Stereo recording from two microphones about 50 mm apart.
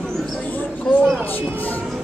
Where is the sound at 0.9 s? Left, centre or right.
Centre.